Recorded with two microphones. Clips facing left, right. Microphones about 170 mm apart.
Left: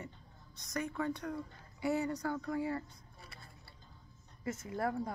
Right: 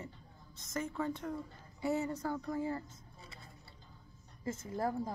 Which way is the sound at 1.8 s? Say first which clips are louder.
Left 1 dB; 25° right (ahead or behind).